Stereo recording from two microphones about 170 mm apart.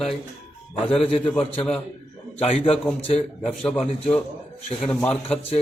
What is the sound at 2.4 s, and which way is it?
Speech, 35° left (ahead or behind).